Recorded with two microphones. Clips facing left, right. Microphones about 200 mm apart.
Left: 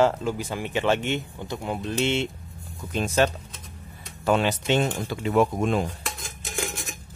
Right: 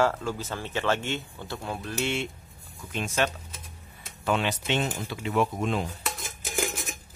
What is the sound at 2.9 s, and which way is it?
Speech, 35° left (ahead or behind).